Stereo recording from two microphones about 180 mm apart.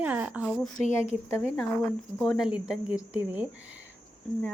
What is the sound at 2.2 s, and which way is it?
Speech, centre (ahead or behind).